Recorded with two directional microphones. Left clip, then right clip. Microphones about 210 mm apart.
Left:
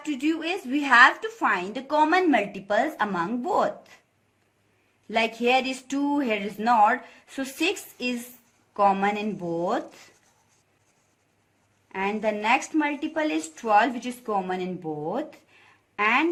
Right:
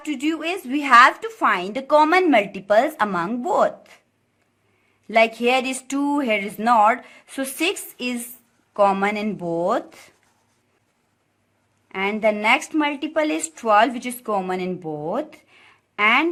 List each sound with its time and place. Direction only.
0.0 s a woman's voice: 40° right (ahead or behind)
5.0 s a woman's voice: 40° right (ahead or behind)
11.9 s a woman's voice: 45° right (ahead or behind)